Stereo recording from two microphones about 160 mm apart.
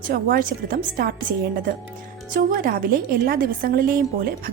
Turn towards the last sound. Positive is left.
turn(degrees=-65)  # may be behind; listen again after turning